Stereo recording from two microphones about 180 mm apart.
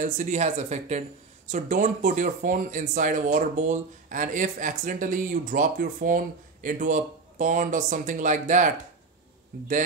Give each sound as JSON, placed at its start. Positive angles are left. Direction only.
{"t": 0.0, "sound": "speech", "side_deg": -45}